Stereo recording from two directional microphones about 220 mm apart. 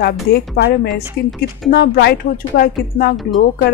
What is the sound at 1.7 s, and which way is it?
Speech, 45° left (ahead or behind).